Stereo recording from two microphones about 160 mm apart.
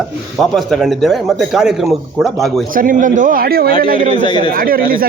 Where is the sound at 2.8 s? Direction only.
55° right (ahead or behind); by 3.7 s 75° right (ahead or behind).